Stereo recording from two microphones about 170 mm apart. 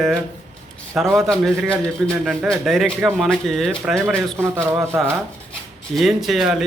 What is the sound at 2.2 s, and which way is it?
Speech, centre (ahead or behind).